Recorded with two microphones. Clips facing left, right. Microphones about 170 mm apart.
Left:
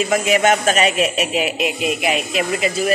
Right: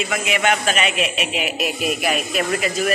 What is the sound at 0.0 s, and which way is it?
A man's voice, 40° left (ahead or behind).